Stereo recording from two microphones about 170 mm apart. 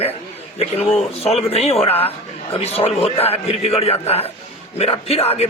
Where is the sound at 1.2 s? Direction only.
35° left (ahead or behind).